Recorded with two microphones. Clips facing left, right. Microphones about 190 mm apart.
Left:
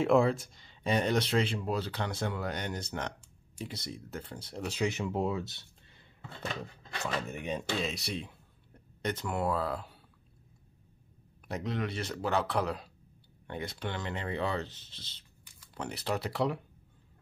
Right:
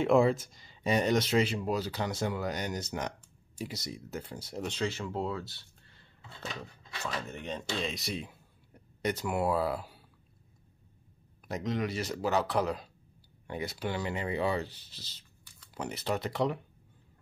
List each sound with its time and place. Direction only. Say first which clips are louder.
0.0 s speech: right 1 dB; centre (ahead or behind)
4.7 s speech: left 4 dB; 15° left (ahead or behind)
7.8 s speech: even; centre (ahead or behind)
11.4 s speech: right 2 dB; centre (ahead or behind)
14.7 s speech: even; 25° left (ahead or behind)
15.7 s speech: right 1 dB; centre (ahead or behind)